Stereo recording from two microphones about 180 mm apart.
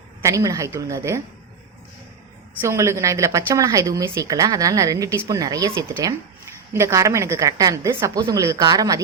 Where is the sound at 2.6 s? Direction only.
15° right (ahead or behind).